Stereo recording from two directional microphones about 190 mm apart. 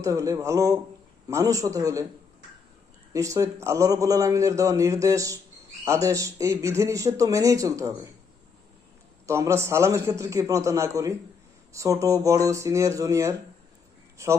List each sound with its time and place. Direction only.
0.0 s a man's voice: 15° right (ahead or behind)
3.1 s a man's voice: 15° right (ahead or behind)
9.2 s a man's voice: 15° right (ahead or behind)